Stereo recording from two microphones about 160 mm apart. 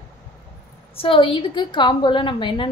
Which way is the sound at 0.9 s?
35° left (ahead or behind).